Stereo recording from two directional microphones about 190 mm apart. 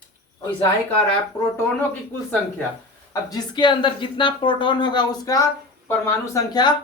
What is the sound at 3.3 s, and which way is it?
Speech, 25° left (ahead or behind).